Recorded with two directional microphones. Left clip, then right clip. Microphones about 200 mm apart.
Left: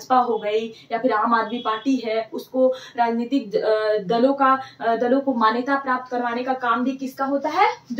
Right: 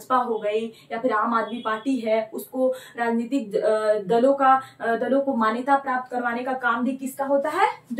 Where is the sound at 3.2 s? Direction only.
Centre (ahead or behind).